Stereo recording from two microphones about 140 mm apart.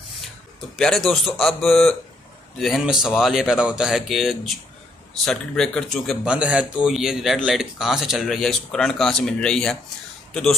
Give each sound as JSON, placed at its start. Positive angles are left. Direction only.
{"t": 0.7, "sound": "speech", "side_deg": 5}